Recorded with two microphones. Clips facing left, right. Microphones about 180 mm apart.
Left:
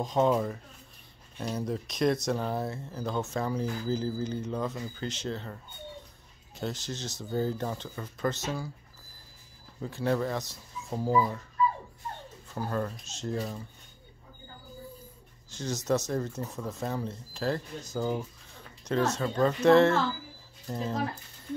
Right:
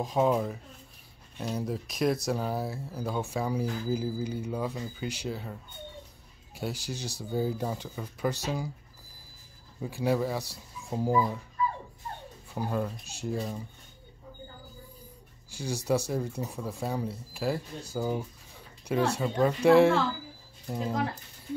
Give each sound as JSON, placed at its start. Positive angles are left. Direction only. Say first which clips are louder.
{"t": 0.0, "sound": "speech", "louder": "even", "side_deg": -5}
{"t": 9.8, "sound": "speech", "louder": "right 1 dB", "side_deg": -10}
{"t": 12.5, "sound": "speech", "louder": "right 1 dB", "side_deg": -10}
{"t": 15.5, "sound": "speech", "louder": "even", "side_deg": -10}